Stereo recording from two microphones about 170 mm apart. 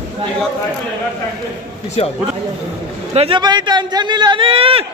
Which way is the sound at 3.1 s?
30° right (ahead or behind).